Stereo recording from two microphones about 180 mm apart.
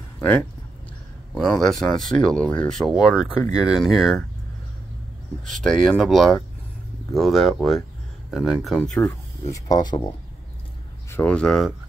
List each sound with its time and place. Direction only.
0.2 s speech: 10° left (ahead or behind)
5.5 s speech: 5° left (ahead or behind)
9.5 s speech: 20° left (ahead or behind)
11.1 s speech: 10° left (ahead or behind)